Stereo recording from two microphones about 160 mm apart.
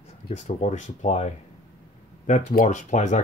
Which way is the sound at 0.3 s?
45° left (ahead or behind).